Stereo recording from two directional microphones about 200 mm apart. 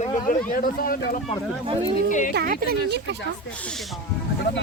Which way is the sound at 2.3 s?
50° right (ahead or behind).